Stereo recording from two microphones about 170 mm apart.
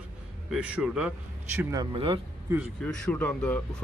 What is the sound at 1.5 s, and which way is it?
Speech, 20° right (ahead or behind).